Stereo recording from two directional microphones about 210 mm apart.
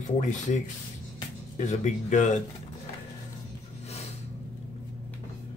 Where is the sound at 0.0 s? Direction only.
35° left (ahead or behind).